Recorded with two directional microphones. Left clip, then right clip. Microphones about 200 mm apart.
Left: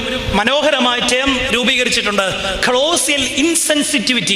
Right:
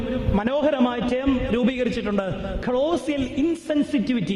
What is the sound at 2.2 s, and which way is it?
A man's voice, 5° left (ahead or behind).